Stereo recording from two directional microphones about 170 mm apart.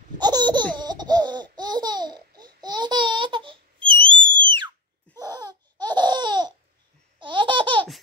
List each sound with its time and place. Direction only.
0.2 s laughter: 25° right (ahead or behind)
1.6 s babbling: 25° right (ahead or behind)
7.2 s laughter: 30° right (ahead or behind)